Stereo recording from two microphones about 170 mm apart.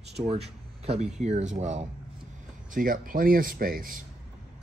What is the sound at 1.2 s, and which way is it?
Speech, 45° right (ahead or behind).